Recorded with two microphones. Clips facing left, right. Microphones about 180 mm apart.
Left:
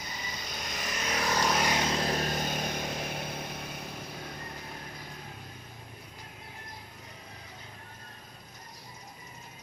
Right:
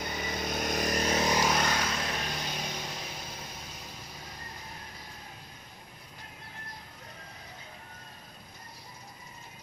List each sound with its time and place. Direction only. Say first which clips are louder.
0.0 s vehicle: right 7 dB; 60° right (ahead or behind); by 1.2 s 35° right (ahead or behind)
1.2 s vehicle: left 1 dB; 15° right (ahead or behind)
1.6 s vehicle: left 3 dB; 20° left (ahead or behind)
2.6 s vehicle: left 4 dB; 55° left (ahead or behind)